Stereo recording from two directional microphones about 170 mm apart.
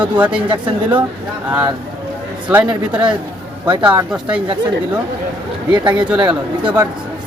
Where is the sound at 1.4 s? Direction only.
10° right (ahead or behind).